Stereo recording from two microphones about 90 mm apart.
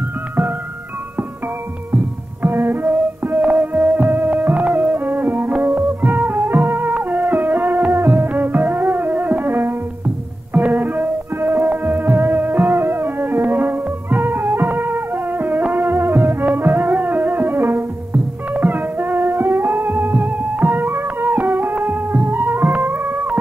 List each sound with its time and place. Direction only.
2.4 s music: 20° right (ahead or behind)